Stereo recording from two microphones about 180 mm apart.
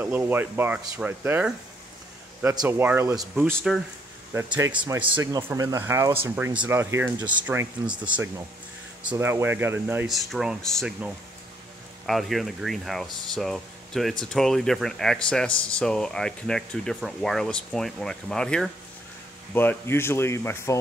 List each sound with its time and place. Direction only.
0.0 s speech: 10° right (ahead or behind)
3.5 s speech: centre (ahead or behind)
4.3 s speech: 15° right (ahead or behind)
9.2 s speech: 10° right (ahead or behind)
10.0 s speech: centre (ahead or behind)
12.1 s speech: centre (ahead or behind)